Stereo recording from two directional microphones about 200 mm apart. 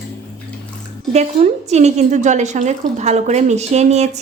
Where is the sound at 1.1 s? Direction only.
35° right (ahead or behind).